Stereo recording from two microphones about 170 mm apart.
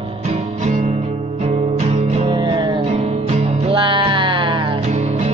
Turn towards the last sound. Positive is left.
turn(degrees=-30)  # may be behind; listen again after turning